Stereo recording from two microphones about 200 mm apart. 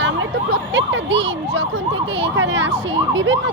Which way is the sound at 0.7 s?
60° right (ahead or behind).